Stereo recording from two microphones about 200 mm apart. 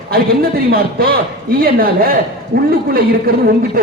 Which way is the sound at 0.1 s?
50° right (ahead or behind).